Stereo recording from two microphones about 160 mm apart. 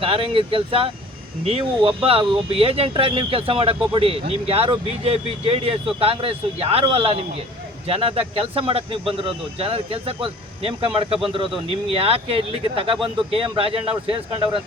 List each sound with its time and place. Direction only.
0.0 s speech: 35° right (ahead or behind)